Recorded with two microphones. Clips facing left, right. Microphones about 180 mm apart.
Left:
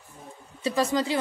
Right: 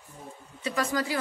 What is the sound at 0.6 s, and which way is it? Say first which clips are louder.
Speech: left 4 dB; 30° left (ahead or behind).